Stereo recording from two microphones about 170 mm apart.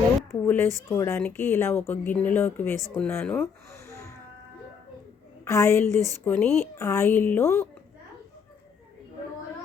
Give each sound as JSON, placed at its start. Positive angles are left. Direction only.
{"t": 0.3, "sound": "speech", "side_deg": 15}
{"t": 5.5, "sound": "speech", "side_deg": 15}